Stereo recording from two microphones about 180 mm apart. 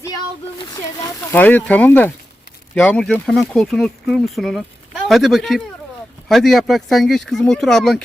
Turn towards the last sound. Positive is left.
turn(degrees=0)  # may be behind; listen again after turning